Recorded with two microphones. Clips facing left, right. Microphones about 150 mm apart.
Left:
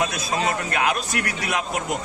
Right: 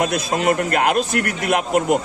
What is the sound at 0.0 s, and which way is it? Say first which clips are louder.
A man's voice: right 5 dB; 55° right (ahead or behind).